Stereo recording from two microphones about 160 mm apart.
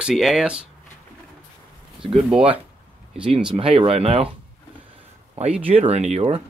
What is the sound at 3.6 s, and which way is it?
Speech, 35° right (ahead or behind).